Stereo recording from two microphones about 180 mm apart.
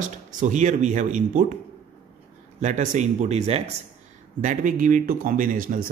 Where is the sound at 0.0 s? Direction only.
45° right (ahead or behind).